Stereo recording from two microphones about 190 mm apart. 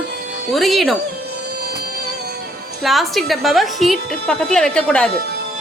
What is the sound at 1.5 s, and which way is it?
Music, 55° right (ahead or behind).